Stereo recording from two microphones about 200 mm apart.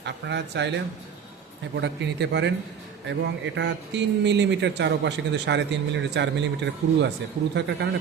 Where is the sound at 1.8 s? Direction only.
60° right (ahead or behind).